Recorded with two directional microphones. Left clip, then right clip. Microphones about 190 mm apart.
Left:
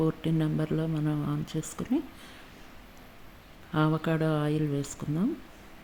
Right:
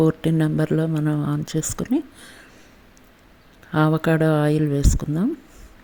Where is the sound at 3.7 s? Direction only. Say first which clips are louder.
Right 8 dB; 35° right (ahead or behind).